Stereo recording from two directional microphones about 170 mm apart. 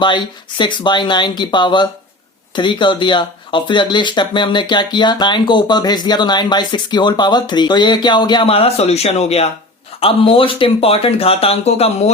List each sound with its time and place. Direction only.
0.0 s speech: 25° left (ahead or behind)